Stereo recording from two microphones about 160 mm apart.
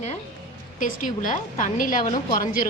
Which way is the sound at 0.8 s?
55° left (ahead or behind).